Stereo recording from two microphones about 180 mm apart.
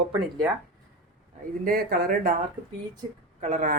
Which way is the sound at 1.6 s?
55° right (ahead or behind).